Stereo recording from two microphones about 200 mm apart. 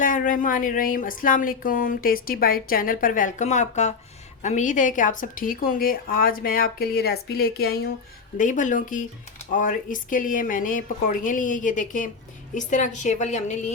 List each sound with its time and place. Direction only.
0.0 s speech: 40° left (ahead or behind)
8.4 s a woman's voice: 40° left (ahead or behind)